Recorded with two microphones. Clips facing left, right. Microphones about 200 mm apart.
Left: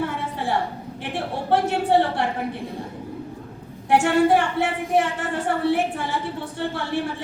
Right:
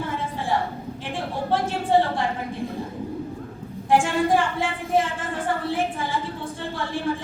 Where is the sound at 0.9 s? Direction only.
65° left (ahead or behind).